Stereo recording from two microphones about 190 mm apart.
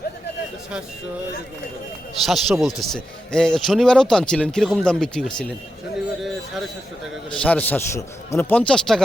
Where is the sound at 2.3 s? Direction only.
Centre (ahead or behind).